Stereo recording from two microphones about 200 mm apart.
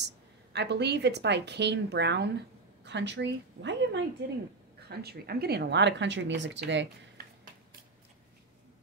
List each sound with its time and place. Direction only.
0.0 s a woman's voice: 60° right (ahead or behind)